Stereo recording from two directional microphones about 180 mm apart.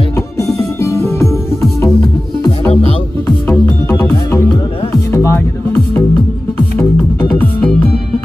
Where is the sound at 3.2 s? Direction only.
10° left (ahead or behind).